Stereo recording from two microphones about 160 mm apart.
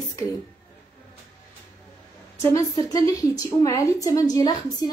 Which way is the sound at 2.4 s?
20° left (ahead or behind).